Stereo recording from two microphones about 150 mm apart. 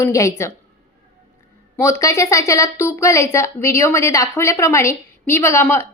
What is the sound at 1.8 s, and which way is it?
A woman's voice, 20° left (ahead or behind).